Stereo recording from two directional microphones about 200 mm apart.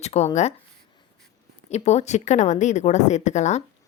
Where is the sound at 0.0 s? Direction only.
35° left (ahead or behind).